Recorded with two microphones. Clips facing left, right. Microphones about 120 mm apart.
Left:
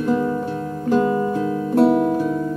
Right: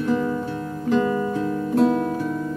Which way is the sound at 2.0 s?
15° left (ahead or behind).